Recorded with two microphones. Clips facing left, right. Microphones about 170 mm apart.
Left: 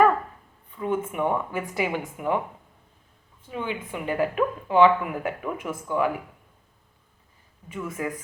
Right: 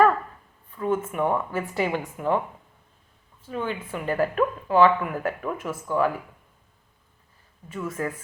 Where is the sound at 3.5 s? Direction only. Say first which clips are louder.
Right 1 dB; 15° left (ahead or behind).